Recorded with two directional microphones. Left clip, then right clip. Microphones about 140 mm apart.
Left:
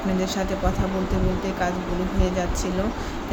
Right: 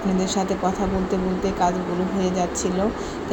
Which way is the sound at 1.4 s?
10° right (ahead or behind).